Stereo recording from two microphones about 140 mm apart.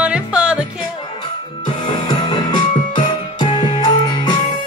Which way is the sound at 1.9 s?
30° left (ahead or behind).